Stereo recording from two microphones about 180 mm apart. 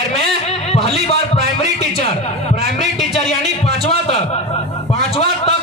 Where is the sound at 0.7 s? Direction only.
35° left (ahead or behind).